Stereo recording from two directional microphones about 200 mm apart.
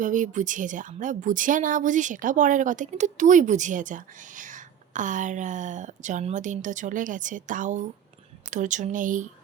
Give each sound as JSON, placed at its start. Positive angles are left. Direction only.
{"t": 0.0, "sound": "a woman's voice", "side_deg": -40}